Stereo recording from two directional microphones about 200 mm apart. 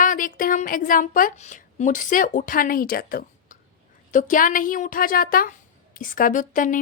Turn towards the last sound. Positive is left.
turn(degrees=40)  # may be behind; listen again after turning